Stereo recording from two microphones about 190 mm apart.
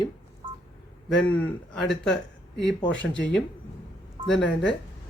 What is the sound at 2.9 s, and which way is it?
Speech, 70° left (ahead or behind).